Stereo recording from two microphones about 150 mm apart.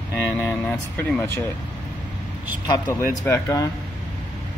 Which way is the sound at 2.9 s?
20° left (ahead or behind).